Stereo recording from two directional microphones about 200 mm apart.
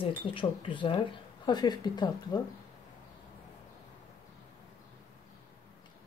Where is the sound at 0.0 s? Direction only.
25° left (ahead or behind).